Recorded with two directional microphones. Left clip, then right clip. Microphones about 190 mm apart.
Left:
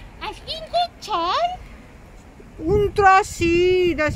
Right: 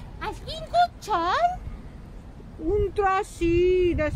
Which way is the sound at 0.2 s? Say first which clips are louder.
Left 3 dB; 35° right (ahead or behind).